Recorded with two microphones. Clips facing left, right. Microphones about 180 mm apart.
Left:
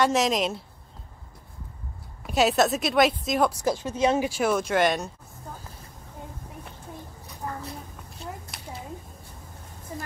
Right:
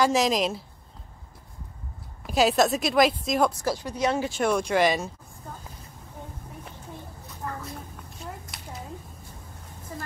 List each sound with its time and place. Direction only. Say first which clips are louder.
0.0 s a woman's voice: even; centre (ahead or behind)
2.2 s a woman's voice: even; centre (ahead or behind)
3.6 s a woman's voice: left 3 dB; 20° left (ahead or behind); by 5.1 s centre (ahead or behind)
8.5 s a sound: even; centre (ahead or behind)